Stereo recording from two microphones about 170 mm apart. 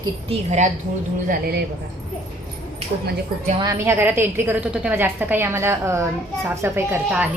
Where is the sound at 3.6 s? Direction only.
15° right (ahead or behind).